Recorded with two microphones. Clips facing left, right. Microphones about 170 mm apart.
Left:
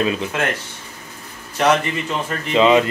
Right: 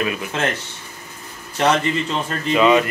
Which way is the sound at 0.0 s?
25° left (ahead or behind).